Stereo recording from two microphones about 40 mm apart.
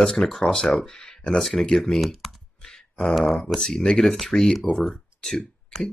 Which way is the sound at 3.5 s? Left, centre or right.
Centre.